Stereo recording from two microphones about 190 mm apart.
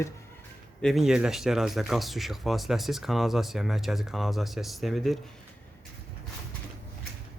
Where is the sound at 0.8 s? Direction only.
Centre (ahead or behind).